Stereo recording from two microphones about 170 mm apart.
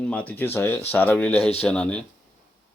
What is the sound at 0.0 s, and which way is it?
Speech, 5° left (ahead or behind).